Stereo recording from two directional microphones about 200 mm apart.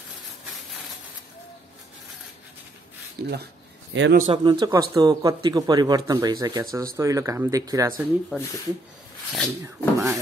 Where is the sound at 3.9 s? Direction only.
65° right (ahead or behind).